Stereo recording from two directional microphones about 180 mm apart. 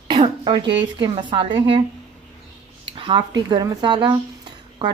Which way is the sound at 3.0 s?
25° right (ahead or behind).